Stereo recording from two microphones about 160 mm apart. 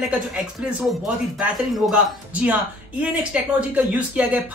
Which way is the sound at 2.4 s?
10° right (ahead or behind).